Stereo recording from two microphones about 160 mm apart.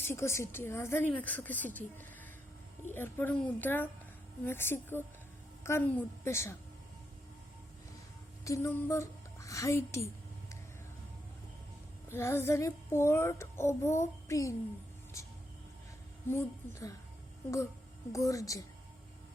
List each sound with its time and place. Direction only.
0.0 s female singing: 15° left (ahead or behind)
8.4 s a woman's voice: 20° left (ahead or behind)
12.0 s female singing: 15° left (ahead or behind)
16.3 s a woman's voice: 20° left (ahead or behind)
18.1 s a woman's voice: 20° left (ahead or behind)